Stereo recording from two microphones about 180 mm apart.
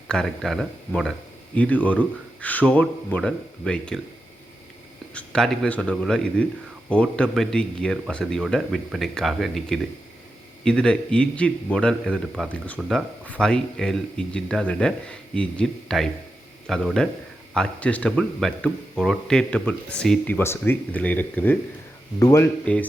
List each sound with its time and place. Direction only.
0.1 s a man's voice: 5° left (ahead or behind)
5.1 s a man's voice: 5° left (ahead or behind)
22.6 s speech: 5° left (ahead or behind)